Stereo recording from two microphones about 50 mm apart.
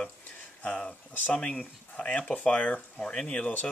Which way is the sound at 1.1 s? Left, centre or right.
Left.